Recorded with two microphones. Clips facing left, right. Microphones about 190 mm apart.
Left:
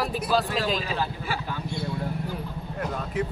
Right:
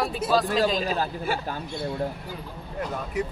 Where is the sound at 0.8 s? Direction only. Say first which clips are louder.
Right 3 dB; 45° right (ahead or behind).